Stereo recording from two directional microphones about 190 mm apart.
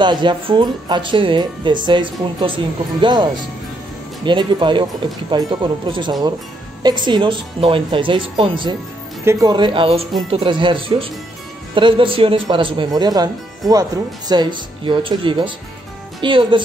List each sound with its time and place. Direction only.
0.0 s speech: 25° right (ahead or behind)
9.2 s speech: 15° right (ahead or behind)